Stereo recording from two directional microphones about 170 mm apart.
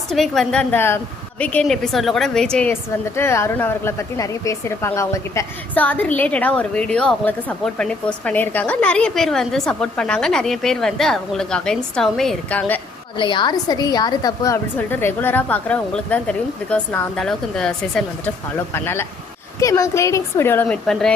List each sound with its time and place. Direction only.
0.1 s a woman's voice: centre (ahead or behind)
13.1 s a woman's voice: 30° left (ahead or behind); by 18.0 s 5° left (ahead or behind)
18.7 s a woman's voice: 15° left (ahead or behind)